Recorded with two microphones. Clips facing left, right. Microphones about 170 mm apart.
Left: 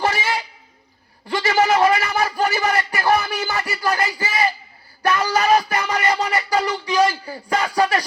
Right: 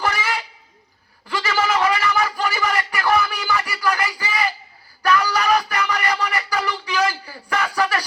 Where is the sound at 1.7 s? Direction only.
40° left (ahead or behind).